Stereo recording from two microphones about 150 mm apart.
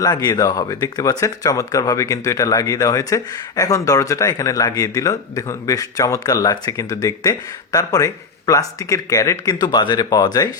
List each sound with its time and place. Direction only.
0.0 s speech: 25° left (ahead or behind)